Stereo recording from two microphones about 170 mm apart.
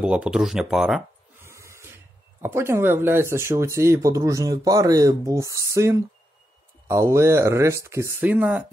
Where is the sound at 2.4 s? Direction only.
15° right (ahead or behind).